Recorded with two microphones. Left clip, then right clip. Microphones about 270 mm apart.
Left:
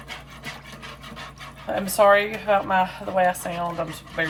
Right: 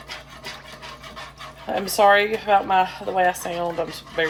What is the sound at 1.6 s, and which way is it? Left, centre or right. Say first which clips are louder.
Speech: right 1 dB; right.